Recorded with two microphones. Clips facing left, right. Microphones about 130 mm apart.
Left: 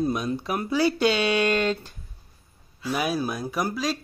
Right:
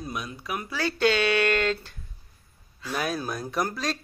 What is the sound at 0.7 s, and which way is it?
Speech, 15° left (ahead or behind).